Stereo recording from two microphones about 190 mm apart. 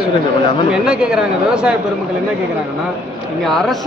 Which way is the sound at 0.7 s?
5° right (ahead or behind).